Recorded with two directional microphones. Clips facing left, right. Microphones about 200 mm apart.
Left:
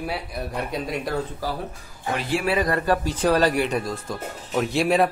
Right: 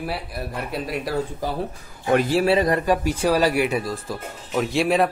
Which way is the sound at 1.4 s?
20° right (ahead or behind).